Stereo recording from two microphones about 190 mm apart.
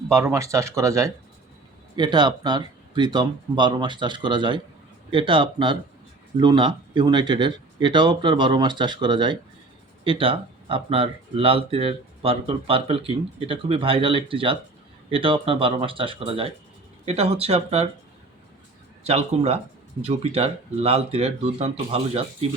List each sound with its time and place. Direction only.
0.1 s speech: 15° right (ahead or behind); by 17.8 s 30° right (ahead or behind)
19.0 s speech: 35° right (ahead or behind)